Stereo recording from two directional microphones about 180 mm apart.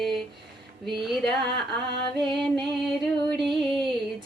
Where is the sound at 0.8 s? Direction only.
Centre (ahead or behind).